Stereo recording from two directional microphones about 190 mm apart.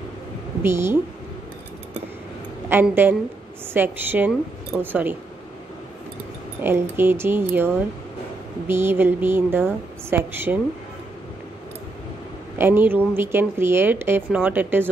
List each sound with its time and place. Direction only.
0.6 s a woman's voice: 10° right (ahead or behind)
2.7 s a woman's voice: 10° right (ahead or behind)
6.6 s a woman's voice: 10° right (ahead or behind)
12.5 s a woman's voice: 10° right (ahead or behind)